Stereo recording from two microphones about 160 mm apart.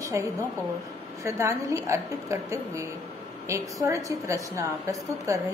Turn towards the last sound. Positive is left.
turn(degrees=-20)  # may be behind; listen again after turning